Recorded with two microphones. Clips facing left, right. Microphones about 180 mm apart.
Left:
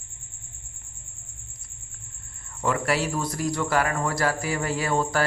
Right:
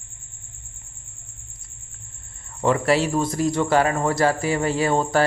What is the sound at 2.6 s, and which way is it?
Speech, 25° right (ahead or behind).